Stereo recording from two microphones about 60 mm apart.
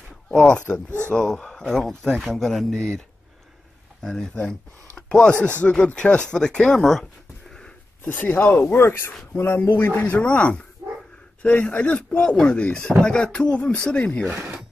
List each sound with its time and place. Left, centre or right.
0.5 s speech: left
1.0 s speech: centre
4.0 s speech: centre
8.0 s speech: left
8.7 s speech: left
10.1 s speech: left
10.8 s dog: right
11.4 s speech: left